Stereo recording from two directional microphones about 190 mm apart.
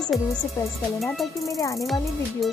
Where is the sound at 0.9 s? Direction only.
Centre (ahead or behind).